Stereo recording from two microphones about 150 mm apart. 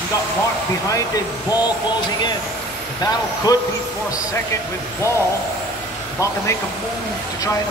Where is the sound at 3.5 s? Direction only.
25° left (ahead or behind).